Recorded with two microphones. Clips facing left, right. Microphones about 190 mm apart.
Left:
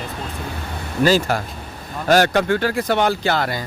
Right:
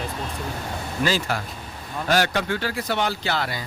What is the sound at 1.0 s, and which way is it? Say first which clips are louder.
Speech: left 8 dB; 45° left (ahead or behind).